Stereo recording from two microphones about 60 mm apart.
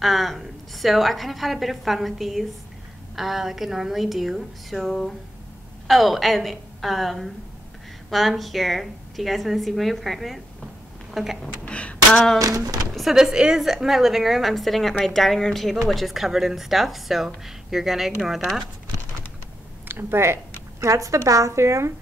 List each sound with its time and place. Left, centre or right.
0.0 s a woman's voice: centre
11.1 s a sound: centre
11.6 s a sound: left
12.4 s music: right
12.9 s a woman's voice: centre
19.9 s speech: right
20.8 s a woman's voice: right